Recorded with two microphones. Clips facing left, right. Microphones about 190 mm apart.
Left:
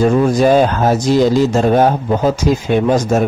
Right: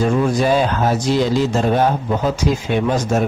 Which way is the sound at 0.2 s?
45° left (ahead or behind).